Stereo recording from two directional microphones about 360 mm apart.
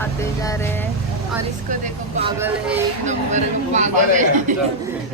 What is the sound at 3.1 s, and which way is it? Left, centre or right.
Speech, centre.